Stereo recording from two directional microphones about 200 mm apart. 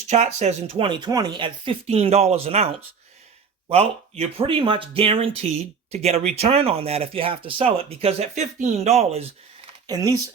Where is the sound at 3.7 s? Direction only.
30° right (ahead or behind).